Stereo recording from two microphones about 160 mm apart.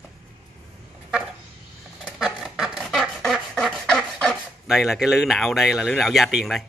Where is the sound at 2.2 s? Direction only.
5° right (ahead or behind).